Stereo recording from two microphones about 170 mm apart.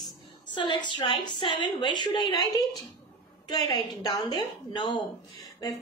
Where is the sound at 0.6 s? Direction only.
25° left (ahead or behind).